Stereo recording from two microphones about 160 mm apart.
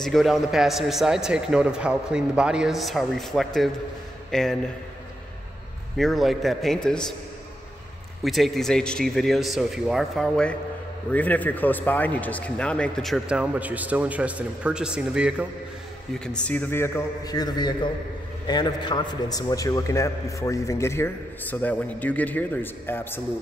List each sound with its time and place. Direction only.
0.0 s speech: centre (ahead or behind)
5.9 s speech: centre (ahead or behind)
8.2 s speech: centre (ahead or behind)
16.3 s a man's voice: 5° left (ahead or behind)